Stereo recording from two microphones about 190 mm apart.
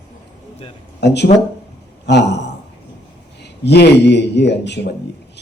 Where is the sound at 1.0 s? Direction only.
60° left (ahead or behind).